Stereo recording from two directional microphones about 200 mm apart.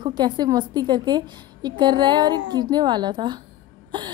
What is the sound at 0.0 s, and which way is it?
A woman's voice, 20° right (ahead or behind).